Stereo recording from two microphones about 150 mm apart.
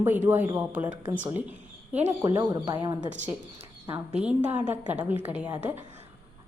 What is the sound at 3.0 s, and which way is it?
Speech, 50° right (ahead or behind).